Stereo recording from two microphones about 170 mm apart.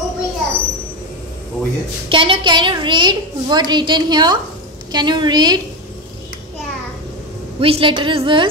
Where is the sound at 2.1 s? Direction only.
30° right (ahead or behind).